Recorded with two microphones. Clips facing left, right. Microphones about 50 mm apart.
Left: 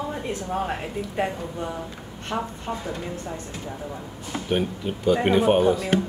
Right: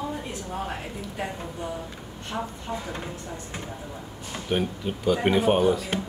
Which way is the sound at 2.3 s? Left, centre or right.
Centre.